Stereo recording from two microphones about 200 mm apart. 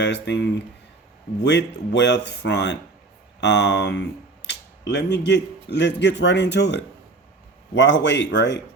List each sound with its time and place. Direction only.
0.0 s speech: 60° left (ahead or behind)